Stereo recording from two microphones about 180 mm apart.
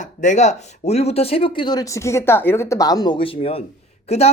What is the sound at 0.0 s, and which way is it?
A woman's voice, 40° left (ahead or behind).